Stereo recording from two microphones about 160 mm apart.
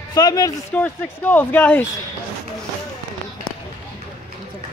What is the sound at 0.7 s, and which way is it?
Speech, 10° left (ahead or behind).